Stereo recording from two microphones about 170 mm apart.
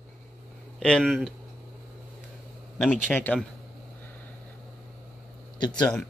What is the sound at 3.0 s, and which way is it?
Speech, 10° left (ahead or behind).